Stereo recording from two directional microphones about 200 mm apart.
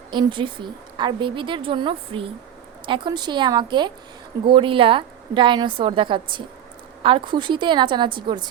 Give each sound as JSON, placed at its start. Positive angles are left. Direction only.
{"t": 0.1, "sound": "a woman's voice", "side_deg": -25}